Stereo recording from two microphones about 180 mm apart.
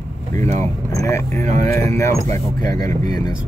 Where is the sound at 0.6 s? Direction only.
15° left (ahead or behind).